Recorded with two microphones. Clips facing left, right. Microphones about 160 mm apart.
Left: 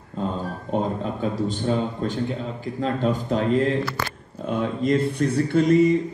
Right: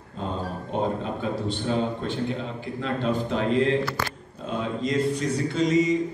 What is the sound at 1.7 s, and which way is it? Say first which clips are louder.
A man's voice: even; 40° left (ahead or behind).